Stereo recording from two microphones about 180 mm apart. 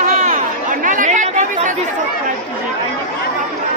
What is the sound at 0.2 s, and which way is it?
Chatter, 45° right (ahead or behind).